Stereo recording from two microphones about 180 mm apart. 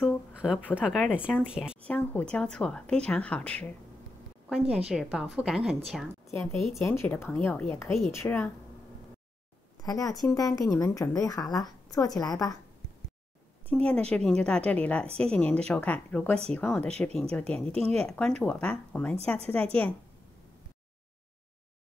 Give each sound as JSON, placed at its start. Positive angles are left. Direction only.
{"t": 0.0, "sound": "speech", "side_deg": -5}
{"t": 1.9, "sound": "speech", "side_deg": 10}
{"t": 4.5, "sound": "a woman's voice", "side_deg": -5}
{"t": 6.8, "sound": "a woman's voice", "side_deg": 15}
{"t": 9.8, "sound": "a woman's voice", "side_deg": 20}
{"t": 13.7, "sound": "a woman's voice", "side_deg": 10}